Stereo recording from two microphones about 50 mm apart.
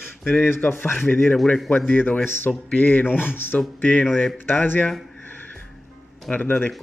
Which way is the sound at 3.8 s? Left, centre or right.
Left.